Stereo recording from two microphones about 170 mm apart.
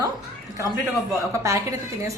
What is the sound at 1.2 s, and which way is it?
Speech, 20° right (ahead or behind).